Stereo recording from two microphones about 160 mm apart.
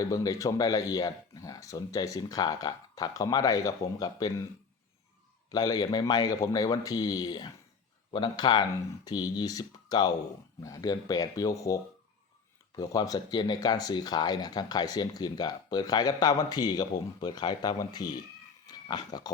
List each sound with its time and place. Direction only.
0.0 s speech: 20° left (ahead or behind)
5.5 s speech: 25° left (ahead or behind)